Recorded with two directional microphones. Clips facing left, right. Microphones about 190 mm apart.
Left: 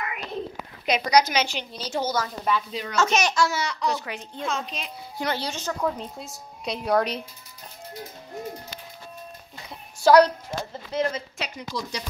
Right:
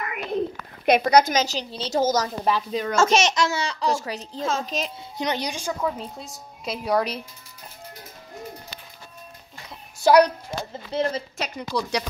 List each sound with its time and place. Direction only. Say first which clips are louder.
0.8 s a woman's voice: right 4 dB; 55° right (ahead or behind); by 2.0 s 35° right (ahead or behind)
2.0 s speech: right 5 dB; 45° right (ahead or behind)
3.1 s speech: right 2 dB; 25° right (ahead or behind)
3.9 s a woman's voice: right 4 dB; 35° right (ahead or behind)
5.1 s speech: right 1 dB; 20° right (ahead or behind)
5.8 s a woman's voice: even; centre (ahead or behind)
10.0 s speech: even; 15° right (ahead or behind)
10.9 s a woman's voice: right 1 dB; 30° right (ahead or behind)
11.7 s speech: right 8 dB; 65° right (ahead or behind)